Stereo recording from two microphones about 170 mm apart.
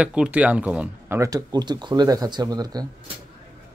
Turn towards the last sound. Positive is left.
turn(degrees=-25)  # may be behind; listen again after turning